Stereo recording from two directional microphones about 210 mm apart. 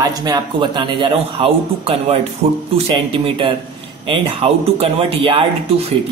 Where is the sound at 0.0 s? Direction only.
20° right (ahead or behind).